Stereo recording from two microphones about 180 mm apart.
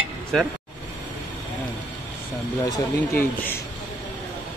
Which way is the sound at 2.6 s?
15° left (ahead or behind).